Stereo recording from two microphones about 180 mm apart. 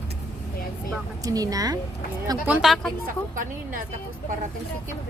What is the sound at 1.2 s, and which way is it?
Speech, 20° right (ahead or behind).